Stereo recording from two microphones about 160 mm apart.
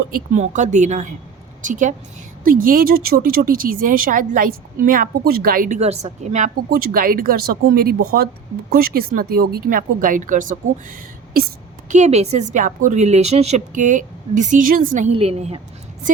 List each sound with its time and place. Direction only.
0.1 s a woman's voice: 50° right (ahead or behind)
2.5 s speech: 60° right (ahead or behind); by 6.5 s 45° right (ahead or behind)
6.7 s speech: 65° right (ahead or behind)
11.9 s a woman's voice: 45° right (ahead or behind)
15.1 s a woman's voice: 40° right (ahead or behind)